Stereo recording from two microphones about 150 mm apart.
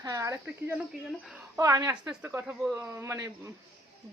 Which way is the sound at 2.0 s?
15° right (ahead or behind).